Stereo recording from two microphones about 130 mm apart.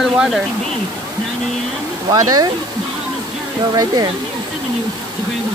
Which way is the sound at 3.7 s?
30° right (ahead or behind).